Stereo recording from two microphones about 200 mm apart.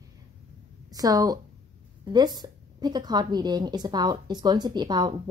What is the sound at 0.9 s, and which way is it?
A woman's voice, 20° right (ahead or behind).